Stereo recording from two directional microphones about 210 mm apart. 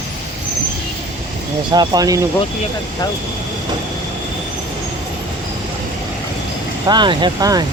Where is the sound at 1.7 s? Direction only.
20° right (ahead or behind).